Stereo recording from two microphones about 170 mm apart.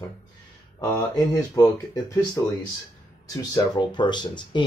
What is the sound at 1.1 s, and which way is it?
Speech, 20° left (ahead or behind).